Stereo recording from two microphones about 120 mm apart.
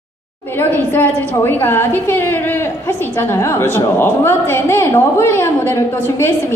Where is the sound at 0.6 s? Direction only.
15° left (ahead or behind).